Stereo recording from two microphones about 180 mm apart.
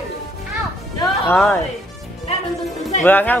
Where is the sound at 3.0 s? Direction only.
10° left (ahead or behind).